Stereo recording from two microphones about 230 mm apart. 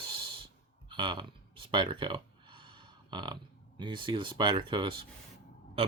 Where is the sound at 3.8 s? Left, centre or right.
Right.